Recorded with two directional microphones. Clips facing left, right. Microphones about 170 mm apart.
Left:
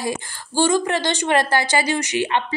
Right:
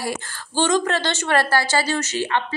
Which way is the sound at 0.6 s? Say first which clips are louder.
Left 1 dB; 10° left (ahead or behind).